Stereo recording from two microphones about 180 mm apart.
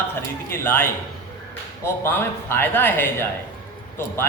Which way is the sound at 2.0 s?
10° left (ahead or behind).